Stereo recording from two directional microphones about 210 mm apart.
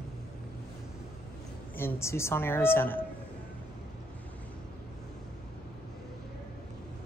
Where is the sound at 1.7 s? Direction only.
10° left (ahead or behind).